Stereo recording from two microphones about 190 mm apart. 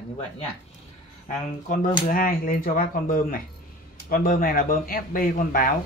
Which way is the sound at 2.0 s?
45° left (ahead or behind).